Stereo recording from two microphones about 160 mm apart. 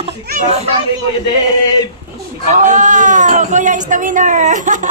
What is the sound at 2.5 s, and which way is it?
Speech, 50° right (ahead or behind).